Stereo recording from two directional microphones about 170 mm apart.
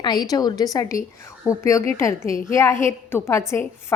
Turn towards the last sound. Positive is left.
turn(degrees=15)  # may be behind; listen again after turning